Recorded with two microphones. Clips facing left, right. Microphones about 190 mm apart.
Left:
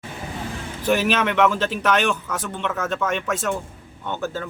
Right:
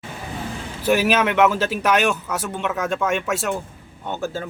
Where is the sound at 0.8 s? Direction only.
5° right (ahead or behind).